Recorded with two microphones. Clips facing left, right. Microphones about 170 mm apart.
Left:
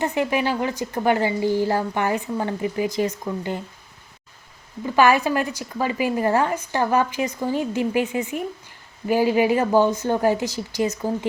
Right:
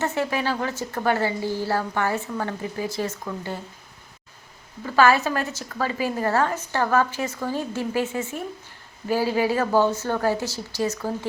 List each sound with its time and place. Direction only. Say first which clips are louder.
0.0 s a woman's voice: left 3 dB; 15° left (ahead or behind)
4.9 s a woman's voice: left 1 dB; 15° left (ahead or behind)